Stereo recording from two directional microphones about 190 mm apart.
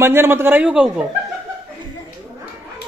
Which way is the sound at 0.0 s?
10° right (ahead or behind).